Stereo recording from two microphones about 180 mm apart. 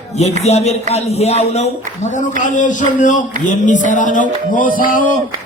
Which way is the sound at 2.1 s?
45° left (ahead or behind).